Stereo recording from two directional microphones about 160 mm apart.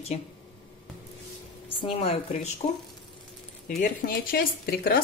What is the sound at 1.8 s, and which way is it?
Speech, 35° left (ahead or behind).